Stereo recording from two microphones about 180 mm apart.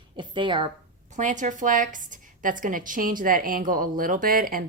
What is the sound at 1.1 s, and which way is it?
A woman's voice, 45° right (ahead or behind).